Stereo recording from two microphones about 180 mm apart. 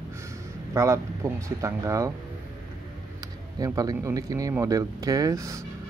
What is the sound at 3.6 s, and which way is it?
Speech, 20° right (ahead or behind).